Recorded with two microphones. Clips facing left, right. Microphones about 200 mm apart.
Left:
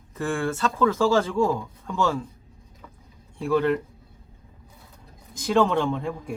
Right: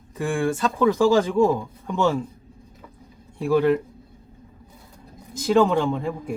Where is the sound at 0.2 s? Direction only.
15° right (ahead or behind).